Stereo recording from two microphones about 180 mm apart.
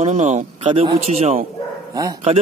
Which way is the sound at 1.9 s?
20° right (ahead or behind).